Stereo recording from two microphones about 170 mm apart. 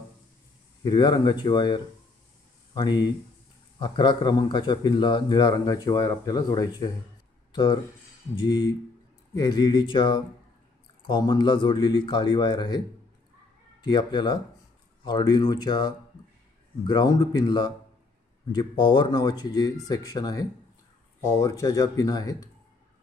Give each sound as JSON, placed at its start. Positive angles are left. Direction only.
{"t": 0.8, "sound": "a man's voice", "side_deg": 25}
{"t": 13.8, "sound": "a man's voice", "side_deg": 25}